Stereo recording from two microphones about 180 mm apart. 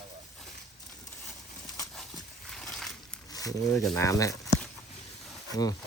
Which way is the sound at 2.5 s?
Centre (ahead or behind).